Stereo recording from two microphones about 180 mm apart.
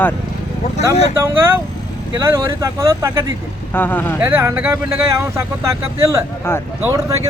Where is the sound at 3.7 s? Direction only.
10° left (ahead or behind).